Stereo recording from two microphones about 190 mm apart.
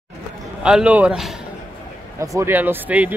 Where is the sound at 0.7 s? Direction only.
5° right (ahead or behind).